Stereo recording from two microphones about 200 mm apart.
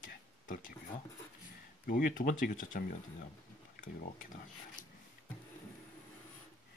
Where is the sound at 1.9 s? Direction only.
45° left (ahead or behind).